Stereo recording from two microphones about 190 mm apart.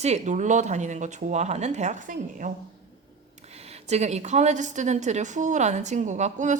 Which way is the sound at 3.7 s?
35° right (ahead or behind).